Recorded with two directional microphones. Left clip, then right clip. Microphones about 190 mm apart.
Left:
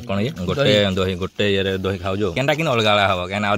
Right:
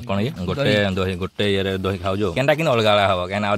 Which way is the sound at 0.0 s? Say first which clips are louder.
Left 1 dB; centre (ahead or behind).